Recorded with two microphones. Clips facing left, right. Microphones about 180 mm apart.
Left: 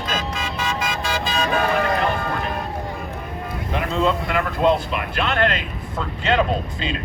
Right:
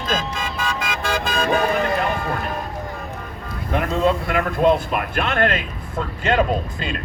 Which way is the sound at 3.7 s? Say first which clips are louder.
Right 2 dB; 50° right (ahead or behind).